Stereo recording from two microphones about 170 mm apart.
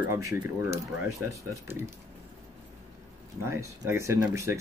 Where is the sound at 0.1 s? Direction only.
15° right (ahead or behind).